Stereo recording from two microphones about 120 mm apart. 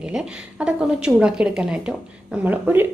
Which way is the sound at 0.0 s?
10° right (ahead or behind).